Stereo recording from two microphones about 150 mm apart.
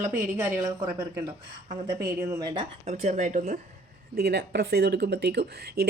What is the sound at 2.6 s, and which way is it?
Speech, 45° right (ahead or behind).